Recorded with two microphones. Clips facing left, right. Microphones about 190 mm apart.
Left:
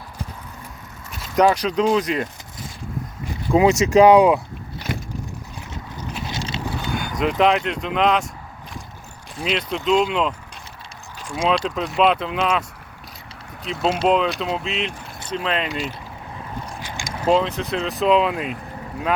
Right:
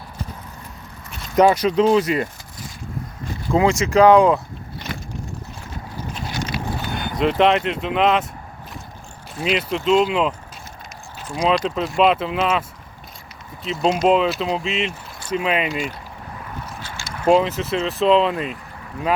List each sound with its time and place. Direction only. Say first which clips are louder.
1.4 s speech: right 2 dB; 5° right (ahead or behind)
3.5 s speech: left 2 dB; 20° left (ahead or behind)
6.3 s horse: right 5 dB; 25° left (ahead or behind)
7.2 s speech: right 2 dB; centre (ahead or behind)
9.4 s speech: right 2 dB; centre (ahead or behind)
13.7 s speech: right 2 dB; 5° left (ahead or behind)
17.2 s speech: right 2 dB; 5° right (ahead or behind)